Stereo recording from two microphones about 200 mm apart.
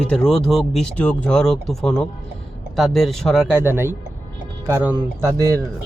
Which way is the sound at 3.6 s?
10° right (ahead or behind).